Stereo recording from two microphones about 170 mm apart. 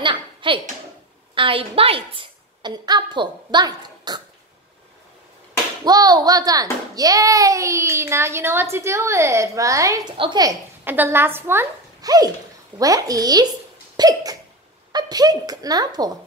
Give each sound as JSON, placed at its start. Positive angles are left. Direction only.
{"t": 0.0, "sound": "a woman's voice", "side_deg": -30}
{"t": 5.9, "sound": "a child's voice", "side_deg": -20}
{"t": 13.9, "sound": "hiccup", "side_deg": -20}
{"t": 14.9, "sound": "a child's voice", "side_deg": -25}